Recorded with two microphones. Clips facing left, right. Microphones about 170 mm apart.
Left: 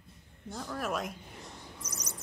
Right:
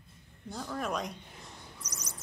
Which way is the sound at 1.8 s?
50° left (ahead or behind).